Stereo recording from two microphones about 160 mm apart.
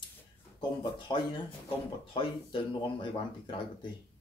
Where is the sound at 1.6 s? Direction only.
30° left (ahead or behind).